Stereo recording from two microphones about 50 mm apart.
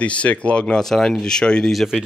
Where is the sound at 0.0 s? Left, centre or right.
Left.